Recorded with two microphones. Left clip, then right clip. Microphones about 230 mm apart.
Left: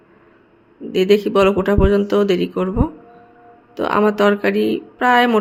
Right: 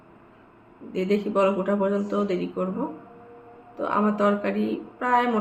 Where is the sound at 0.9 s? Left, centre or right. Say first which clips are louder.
Left 11 dB; left.